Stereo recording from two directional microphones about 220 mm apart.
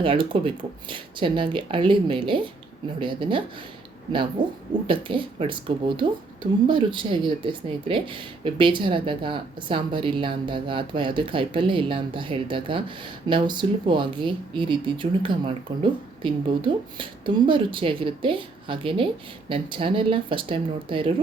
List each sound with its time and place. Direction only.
0.0 s speech: 25° right (ahead or behind)